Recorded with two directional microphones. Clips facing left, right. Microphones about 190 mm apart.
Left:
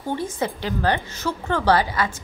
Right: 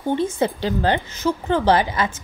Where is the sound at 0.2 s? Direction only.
30° right (ahead or behind).